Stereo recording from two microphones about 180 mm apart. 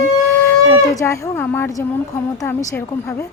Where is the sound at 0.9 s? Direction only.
15° left (ahead or behind).